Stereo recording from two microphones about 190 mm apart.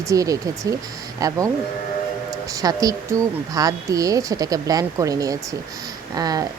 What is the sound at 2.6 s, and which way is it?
Speech, 20° right (ahead or behind).